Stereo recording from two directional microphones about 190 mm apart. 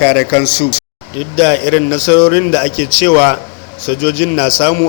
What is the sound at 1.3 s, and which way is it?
Speech, 30° left (ahead or behind).